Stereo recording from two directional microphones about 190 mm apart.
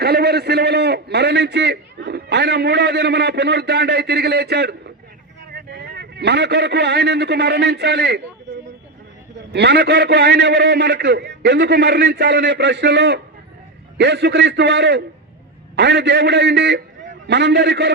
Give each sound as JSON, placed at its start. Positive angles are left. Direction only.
{"t": 0.0, "sound": "a man's voice", "side_deg": -60}
{"t": 9.5, "sound": "a man's voice", "side_deg": -60}